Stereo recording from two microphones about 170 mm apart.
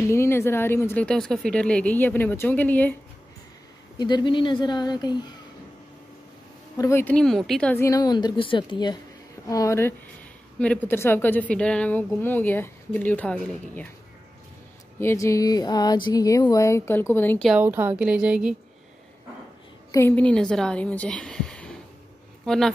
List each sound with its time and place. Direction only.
0.1 s a woman's voice: 15° left (ahead or behind)
4.0 s speech: 25° left (ahead or behind)
6.8 s a woman's voice: 15° left (ahead or behind)
7.7 s a woman's voice: 20° left (ahead or behind)
15.0 s speech: 15° left (ahead or behind)
17.5 s a woman's voice: 10° right (ahead or behind)
19.9 s a woman's voice: 15° left (ahead or behind)